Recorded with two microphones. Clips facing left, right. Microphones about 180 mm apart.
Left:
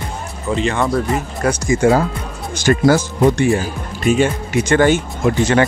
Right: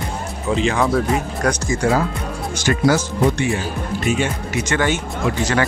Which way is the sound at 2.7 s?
45° left (ahead or behind).